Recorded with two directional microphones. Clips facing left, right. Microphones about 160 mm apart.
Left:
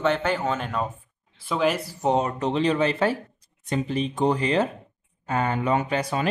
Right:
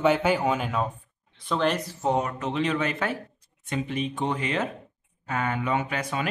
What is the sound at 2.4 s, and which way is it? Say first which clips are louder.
Speech: left 4 dB; 35° left (ahead or behind).